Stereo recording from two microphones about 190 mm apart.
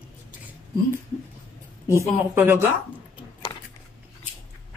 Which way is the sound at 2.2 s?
10° right (ahead or behind).